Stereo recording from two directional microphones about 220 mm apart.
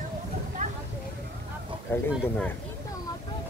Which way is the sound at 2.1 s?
5° left (ahead or behind).